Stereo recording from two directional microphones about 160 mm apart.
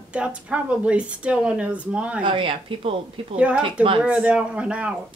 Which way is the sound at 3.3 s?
10° right (ahead or behind).